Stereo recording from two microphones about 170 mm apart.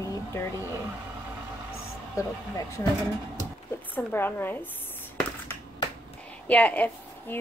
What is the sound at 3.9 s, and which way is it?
Speech, 15° left (ahead or behind).